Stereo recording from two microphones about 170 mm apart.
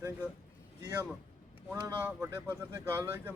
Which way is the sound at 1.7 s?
15° right (ahead or behind).